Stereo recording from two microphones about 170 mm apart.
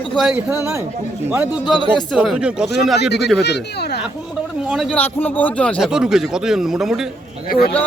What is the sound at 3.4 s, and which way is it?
Speech, 75° left (ahead or behind).